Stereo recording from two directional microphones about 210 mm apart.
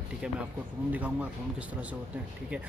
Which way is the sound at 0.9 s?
10° right (ahead or behind).